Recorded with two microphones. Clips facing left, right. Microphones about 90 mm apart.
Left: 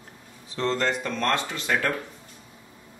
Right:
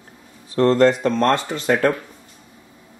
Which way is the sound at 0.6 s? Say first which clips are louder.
Right 11 dB; 45° right (ahead or behind).